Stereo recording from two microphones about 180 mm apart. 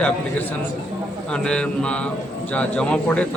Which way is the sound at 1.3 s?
5° left (ahead or behind).